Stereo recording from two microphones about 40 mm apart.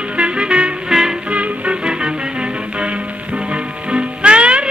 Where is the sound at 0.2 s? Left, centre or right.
Right.